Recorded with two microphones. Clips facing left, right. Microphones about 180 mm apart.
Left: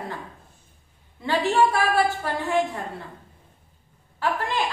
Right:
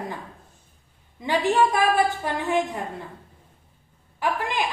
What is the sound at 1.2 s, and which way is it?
A woman's voice, 15° right (ahead or behind).